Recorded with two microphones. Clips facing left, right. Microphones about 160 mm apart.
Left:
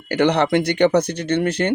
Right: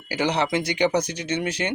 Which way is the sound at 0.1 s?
60° left (ahead or behind).